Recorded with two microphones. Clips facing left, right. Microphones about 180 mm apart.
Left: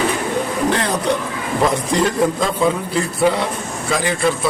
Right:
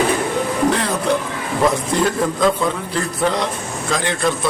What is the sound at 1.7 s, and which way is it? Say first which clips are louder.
A man's voice: left 1 dB; centre (ahead or behind).